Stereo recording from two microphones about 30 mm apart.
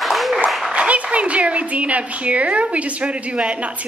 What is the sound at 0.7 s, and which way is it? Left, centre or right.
Speech, right.